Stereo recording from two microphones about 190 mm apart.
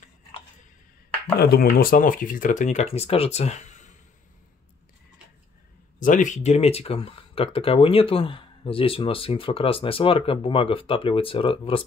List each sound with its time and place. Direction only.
1.4 s speech: 55° left (ahead or behind); by 3.9 s 40° left (ahead or behind)
5.9 s speech: 45° left (ahead or behind)